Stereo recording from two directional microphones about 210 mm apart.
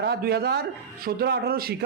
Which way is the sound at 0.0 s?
50° right (ahead or behind).